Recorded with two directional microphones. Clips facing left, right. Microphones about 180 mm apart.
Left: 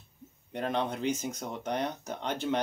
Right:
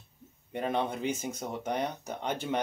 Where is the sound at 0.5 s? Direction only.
5° right (ahead or behind).